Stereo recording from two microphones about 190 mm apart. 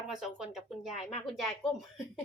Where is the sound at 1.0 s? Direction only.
35° left (ahead or behind).